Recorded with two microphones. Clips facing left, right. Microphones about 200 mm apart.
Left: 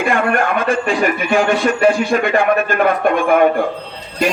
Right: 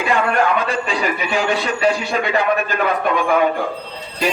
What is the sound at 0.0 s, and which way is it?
A man's voice, 50° left (ahead or behind).